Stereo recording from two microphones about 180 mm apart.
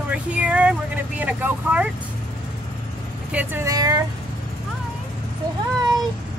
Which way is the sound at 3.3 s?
15° right (ahead or behind).